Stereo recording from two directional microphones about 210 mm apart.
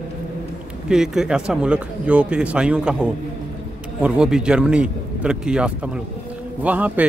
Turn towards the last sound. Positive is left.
turn(degrees=-5)  # may be behind; listen again after turning